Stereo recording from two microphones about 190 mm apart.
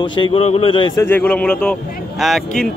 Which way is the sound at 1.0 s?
10° left (ahead or behind).